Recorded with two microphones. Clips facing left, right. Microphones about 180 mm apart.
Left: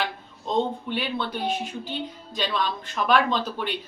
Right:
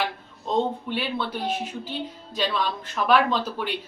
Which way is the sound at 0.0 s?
5° right (ahead or behind).